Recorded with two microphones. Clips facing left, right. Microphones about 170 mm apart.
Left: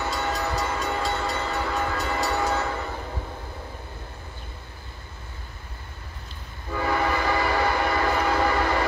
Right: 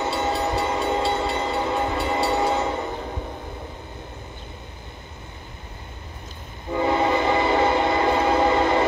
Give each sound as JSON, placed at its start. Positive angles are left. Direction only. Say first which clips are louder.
{"t": 0.0, "sound": "train", "louder": "right 4 dB", "side_deg": -20}
{"t": 6.7, "sound": "train", "louder": "right 4 dB", "side_deg": -20}